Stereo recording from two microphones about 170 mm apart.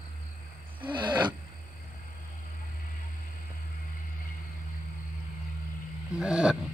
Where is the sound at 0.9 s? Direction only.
25° right (ahead or behind).